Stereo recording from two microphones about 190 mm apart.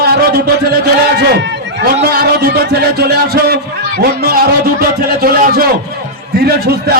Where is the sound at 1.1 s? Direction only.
65° right (ahead or behind).